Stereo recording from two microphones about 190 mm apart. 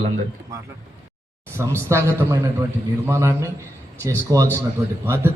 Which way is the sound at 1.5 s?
15° right (ahead or behind).